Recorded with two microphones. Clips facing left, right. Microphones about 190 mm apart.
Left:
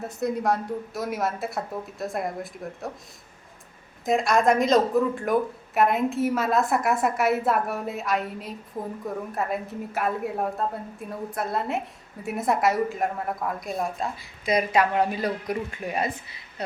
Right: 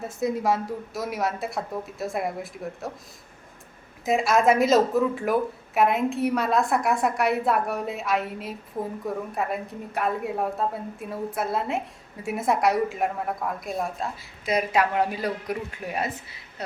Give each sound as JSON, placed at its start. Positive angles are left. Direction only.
{"t": 0.0, "sound": "speech", "side_deg": 0}
{"t": 4.0, "sound": "speech", "side_deg": -5}